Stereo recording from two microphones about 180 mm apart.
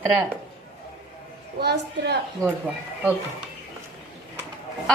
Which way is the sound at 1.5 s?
65° right (ahead or behind).